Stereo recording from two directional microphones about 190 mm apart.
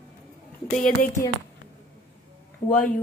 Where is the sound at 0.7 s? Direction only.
40° left (ahead or behind).